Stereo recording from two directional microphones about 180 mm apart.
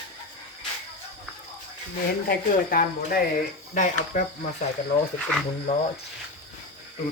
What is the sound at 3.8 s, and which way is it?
Speech, 45° left (ahead or behind).